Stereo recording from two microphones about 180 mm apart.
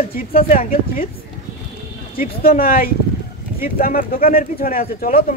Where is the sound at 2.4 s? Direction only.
55° left (ahead or behind).